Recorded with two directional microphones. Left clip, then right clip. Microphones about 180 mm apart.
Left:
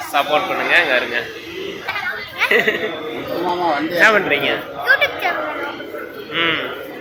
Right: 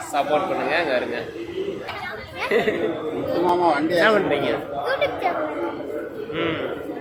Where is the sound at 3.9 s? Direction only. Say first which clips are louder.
Left 9 dB; 5° left (ahead or behind).